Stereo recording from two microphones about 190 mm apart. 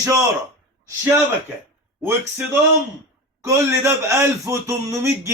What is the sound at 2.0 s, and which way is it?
A man's voice, 10° right (ahead or behind).